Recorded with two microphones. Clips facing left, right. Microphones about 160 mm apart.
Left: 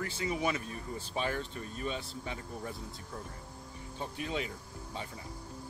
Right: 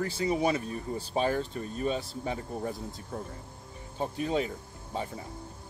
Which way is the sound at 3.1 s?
55° right (ahead or behind).